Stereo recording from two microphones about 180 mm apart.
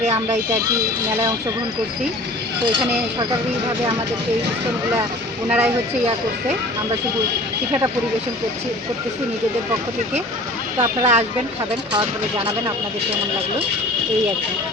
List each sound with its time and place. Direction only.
0.0 s vehicle: 40° right (ahead or behind)
5.5 s speech: 10° right (ahead or behind)
10.8 s speech: 40° right (ahead or behind)